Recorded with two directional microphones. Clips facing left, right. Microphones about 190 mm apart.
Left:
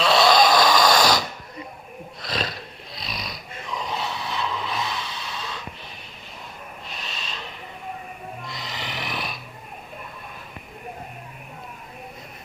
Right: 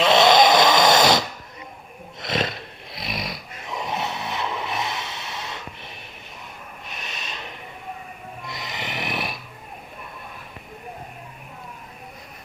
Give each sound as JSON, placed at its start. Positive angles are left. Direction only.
{"t": 0.0, "sound": "dog", "side_deg": -20}
{"t": 2.2, "sound": "roar", "side_deg": -25}
{"t": 8.4, "sound": "snoring", "side_deg": -20}